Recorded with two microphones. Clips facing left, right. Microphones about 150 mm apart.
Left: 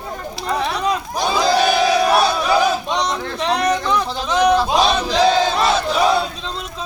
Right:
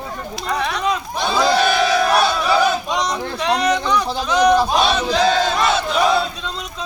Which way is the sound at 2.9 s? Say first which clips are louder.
Even; centre (ahead or behind).